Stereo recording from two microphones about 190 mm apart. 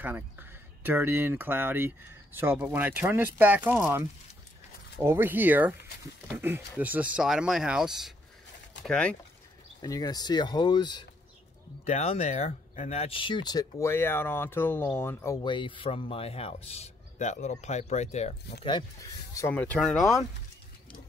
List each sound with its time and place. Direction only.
0.0 s speech: 10° right (ahead or behind); by 9.1 s 5° left (ahead or behind)
9.8 s speech: 20° left (ahead or behind)
11.8 s speech: 35° left (ahead or behind); by 15.3 s 10° left (ahead or behind)
15.4 s speech: 25° left (ahead or behind)
18.6 s speech: 25° left (ahead or behind); by 20.2 s centre (ahead or behind)